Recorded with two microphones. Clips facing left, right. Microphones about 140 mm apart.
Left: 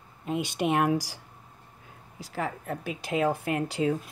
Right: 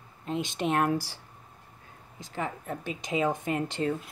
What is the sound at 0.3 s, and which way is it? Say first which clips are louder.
Speech: left 2 dB; 10° left (ahead or behind).